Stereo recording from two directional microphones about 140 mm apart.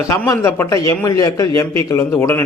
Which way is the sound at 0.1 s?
20° left (ahead or behind).